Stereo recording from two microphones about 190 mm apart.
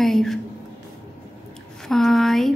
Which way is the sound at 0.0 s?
Centre (ahead or behind).